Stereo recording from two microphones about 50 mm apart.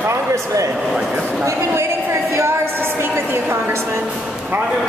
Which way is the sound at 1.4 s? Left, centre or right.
Right.